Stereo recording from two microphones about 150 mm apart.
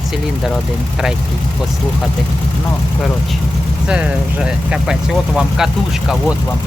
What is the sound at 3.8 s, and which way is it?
Speech, 10° right (ahead or behind).